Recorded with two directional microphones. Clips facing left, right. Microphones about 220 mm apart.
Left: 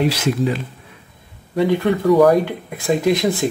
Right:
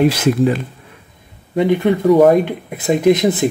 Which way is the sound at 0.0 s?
50° right (ahead or behind).